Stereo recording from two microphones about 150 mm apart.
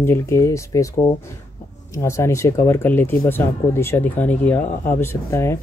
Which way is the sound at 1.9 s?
20° left (ahead or behind).